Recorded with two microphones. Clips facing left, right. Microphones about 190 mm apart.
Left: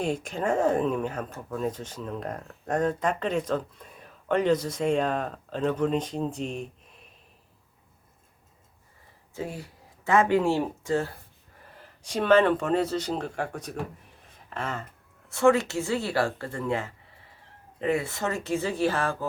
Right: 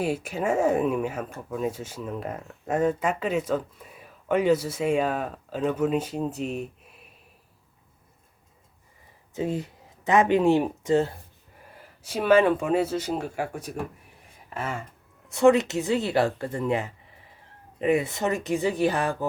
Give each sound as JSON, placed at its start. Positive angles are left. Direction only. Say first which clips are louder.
{"t": 0.0, "sound": "speech", "louder": "right 1 dB", "side_deg": -5}
{"t": 9.3, "sound": "speech", "louder": "right 7 dB", "side_deg": -20}
{"t": 11.8, "sound": "speech", "louder": "even", "side_deg": -5}
{"t": 14.3, "sound": "a sound", "louder": "right 1 dB", "side_deg": -10}
{"t": 15.3, "sound": "speech", "louder": "right 3 dB", "side_deg": -20}